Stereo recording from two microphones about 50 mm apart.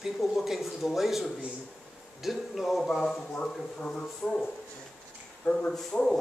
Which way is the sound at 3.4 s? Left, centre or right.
Centre.